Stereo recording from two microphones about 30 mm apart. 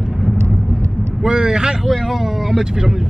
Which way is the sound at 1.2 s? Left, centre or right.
Right.